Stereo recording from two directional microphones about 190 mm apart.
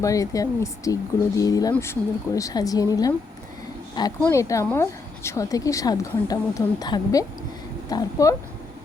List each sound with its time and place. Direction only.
0.0 s a woman's voice: 15° left (ahead or behind)
4.2 s a woman's voice: 15° left (ahead or behind)